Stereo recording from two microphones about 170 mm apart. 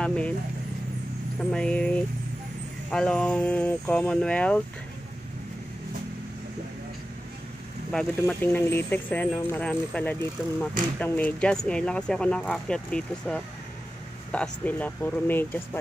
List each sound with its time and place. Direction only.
0.0 s vehicle: 5° left (ahead or behind)
1.5 s speech: 5° left (ahead or behind)
7.9 s speech: 5° left (ahead or behind)